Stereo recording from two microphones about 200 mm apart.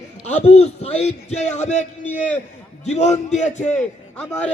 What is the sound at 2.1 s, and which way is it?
Speech, 10° left (ahead or behind).